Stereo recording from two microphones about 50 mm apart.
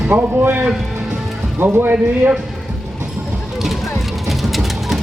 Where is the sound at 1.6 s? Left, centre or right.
Right.